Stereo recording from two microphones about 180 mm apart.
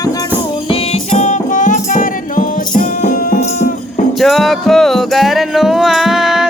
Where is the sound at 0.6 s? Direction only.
30° left (ahead or behind); by 3.5 s 50° left (ahead or behind).